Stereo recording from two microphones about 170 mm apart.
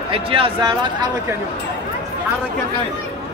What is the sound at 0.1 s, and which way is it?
Speech, 30° right (ahead or behind).